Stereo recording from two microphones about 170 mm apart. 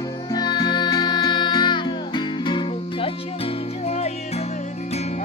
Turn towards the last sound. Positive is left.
turn(degrees=40)  # may be behind; listen again after turning